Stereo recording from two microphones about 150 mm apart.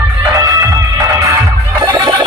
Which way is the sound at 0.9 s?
20° right (ahead or behind).